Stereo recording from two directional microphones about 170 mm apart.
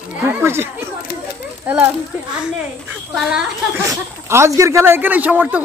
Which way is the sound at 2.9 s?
5° right (ahead or behind).